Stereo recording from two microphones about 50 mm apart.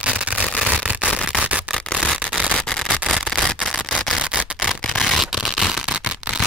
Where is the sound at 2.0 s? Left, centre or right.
Right.